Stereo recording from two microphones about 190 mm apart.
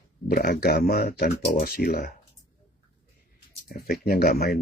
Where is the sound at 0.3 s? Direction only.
55° left (ahead or behind).